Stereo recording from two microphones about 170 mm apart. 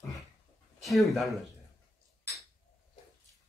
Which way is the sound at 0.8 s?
Centre (ahead or behind).